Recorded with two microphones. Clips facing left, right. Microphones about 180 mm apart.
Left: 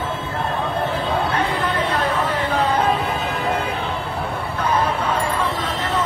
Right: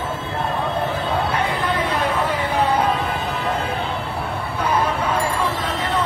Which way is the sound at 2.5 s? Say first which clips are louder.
Right 1 dB; 10° right (ahead or behind).